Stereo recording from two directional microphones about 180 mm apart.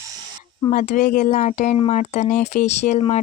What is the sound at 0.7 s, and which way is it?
Speech, 45° left (ahead or behind).